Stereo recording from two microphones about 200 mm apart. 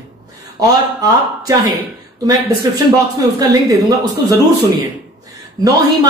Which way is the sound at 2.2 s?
15° right (ahead or behind).